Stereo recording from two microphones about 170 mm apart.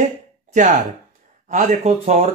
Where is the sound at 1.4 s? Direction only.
45° right (ahead or behind).